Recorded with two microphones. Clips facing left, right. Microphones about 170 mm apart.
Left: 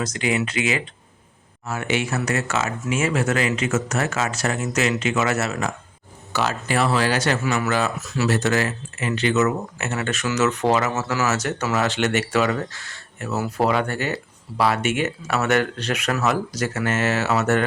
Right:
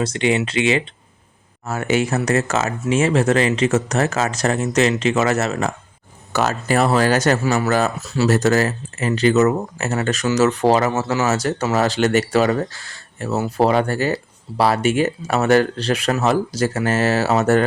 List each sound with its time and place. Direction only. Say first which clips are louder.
0.0 s speech: right 4 dB; 30° right (ahead or behind)
1.6 s speech: right 5 dB; 40° right (ahead or behind)